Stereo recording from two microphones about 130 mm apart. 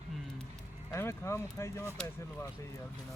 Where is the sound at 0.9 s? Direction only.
20° left (ahead or behind).